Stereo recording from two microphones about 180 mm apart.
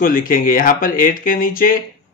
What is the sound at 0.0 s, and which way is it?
Speech, 50° left (ahead or behind).